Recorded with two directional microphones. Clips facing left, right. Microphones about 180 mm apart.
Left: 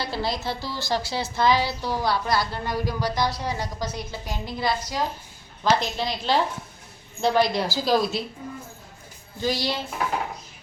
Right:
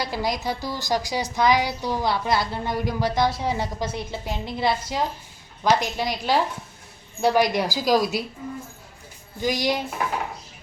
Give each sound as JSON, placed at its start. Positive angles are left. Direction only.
{"t": 0.0, "sound": "a woman's voice", "side_deg": -15}
{"t": 5.6, "sound": "a woman's voice", "side_deg": -15}
{"t": 9.4, "sound": "a woman's voice", "side_deg": -15}